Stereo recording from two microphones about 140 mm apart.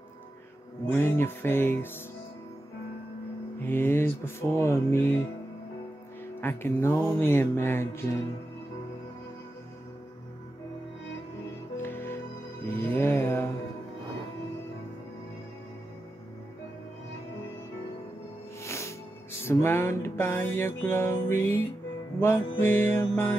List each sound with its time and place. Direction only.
0.9 s music: 15° left (ahead or behind)
3.6 s music: 15° left (ahead or behind)
6.4 s music: 15° left (ahead or behind)
11.7 s music: 15° left (ahead or behind)
12.6 s mantra: 15° left (ahead or behind)
18.6 s music: 20° left (ahead or behind)